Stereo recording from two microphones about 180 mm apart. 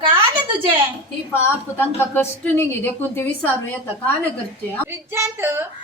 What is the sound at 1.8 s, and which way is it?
A woman's voice, 10° left (ahead or behind).